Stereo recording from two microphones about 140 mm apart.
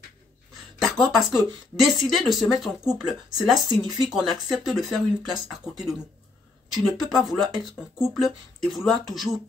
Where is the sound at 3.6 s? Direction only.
30° right (ahead or behind).